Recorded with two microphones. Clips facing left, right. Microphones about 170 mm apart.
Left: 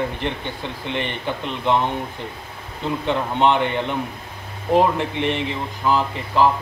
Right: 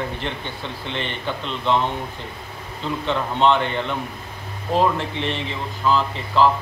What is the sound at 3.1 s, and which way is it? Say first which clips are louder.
Speech: even; 15° left (ahead or behind).